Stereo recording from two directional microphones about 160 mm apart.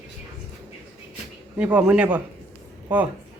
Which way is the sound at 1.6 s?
10° right (ahead or behind).